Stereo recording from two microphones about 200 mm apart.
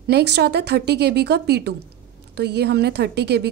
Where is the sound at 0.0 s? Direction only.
55° right (ahead or behind).